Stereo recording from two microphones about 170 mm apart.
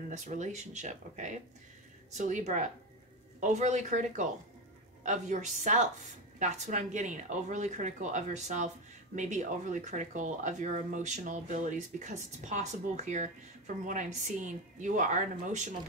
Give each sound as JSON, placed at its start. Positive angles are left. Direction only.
{"t": 0.2, "sound": "speech", "side_deg": -45}